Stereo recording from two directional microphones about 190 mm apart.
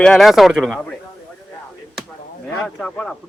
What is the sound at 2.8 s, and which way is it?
Speech, 5° left (ahead or behind).